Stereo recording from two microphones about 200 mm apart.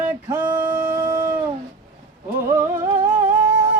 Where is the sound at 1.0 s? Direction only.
45° right (ahead or behind).